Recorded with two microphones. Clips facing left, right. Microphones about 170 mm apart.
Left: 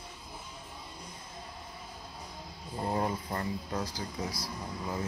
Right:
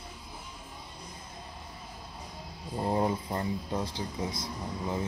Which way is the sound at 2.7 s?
20° right (ahead or behind).